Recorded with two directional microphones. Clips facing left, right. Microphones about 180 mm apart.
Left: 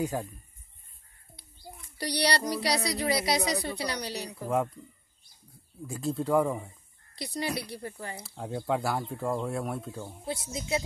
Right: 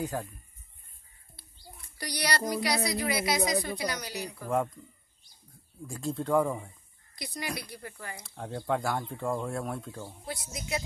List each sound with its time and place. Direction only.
0.0 s speech: 10° left (ahead or behind)
2.0 s speech: 30° left (ahead or behind)
5.8 s speech: 5° left (ahead or behind)
7.2 s speech: 30° left (ahead or behind)
8.2 s speech: 5° left (ahead or behind)
10.0 s speech: 25° left (ahead or behind)